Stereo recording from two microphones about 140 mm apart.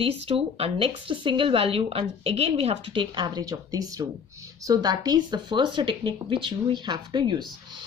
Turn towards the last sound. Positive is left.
turn(degrees=-30)  # may be behind; listen again after turning